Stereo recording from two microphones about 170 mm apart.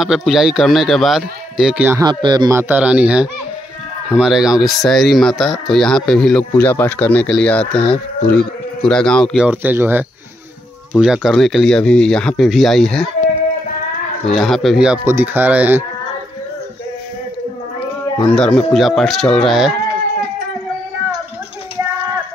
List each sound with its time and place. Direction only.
0.0 s speech: centre (ahead or behind)
2.0 s speech: 25° right (ahead or behind)
2.7 s speech: 10° right (ahead or behind)
14.3 s speech: centre (ahead or behind)
18.2 s speech: 5° left (ahead or behind)